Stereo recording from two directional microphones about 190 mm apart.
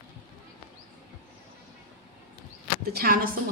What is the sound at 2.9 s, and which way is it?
Speech, 50° right (ahead or behind).